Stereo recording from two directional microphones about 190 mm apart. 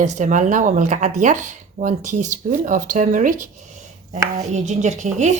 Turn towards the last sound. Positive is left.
turn(degrees=-40)  # may be behind; listen again after turning